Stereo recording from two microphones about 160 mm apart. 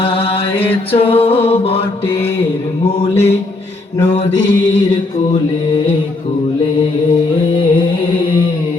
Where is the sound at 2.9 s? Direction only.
40° left (ahead or behind).